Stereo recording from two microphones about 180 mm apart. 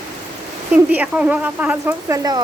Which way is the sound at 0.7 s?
10° right (ahead or behind).